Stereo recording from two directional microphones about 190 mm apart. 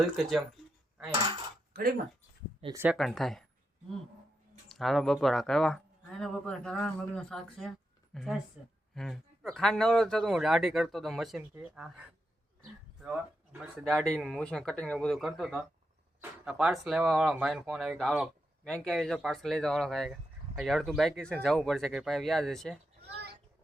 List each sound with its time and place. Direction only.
0.0 s speech: centre (ahead or behind)
1.7 s speech: 50° right (ahead or behind)
2.7 s speech: 10° right (ahead or behind)
3.0 s speech: centre (ahead or behind)
4.7 s speech: centre (ahead or behind)